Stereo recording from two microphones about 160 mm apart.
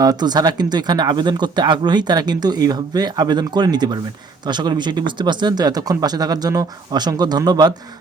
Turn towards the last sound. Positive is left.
turn(degrees=-25)  # may be behind; listen again after turning